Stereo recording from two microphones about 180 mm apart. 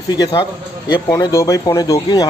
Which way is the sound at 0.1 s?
25° left (ahead or behind).